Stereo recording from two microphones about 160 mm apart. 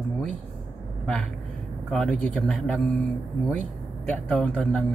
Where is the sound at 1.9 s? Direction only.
5° left (ahead or behind).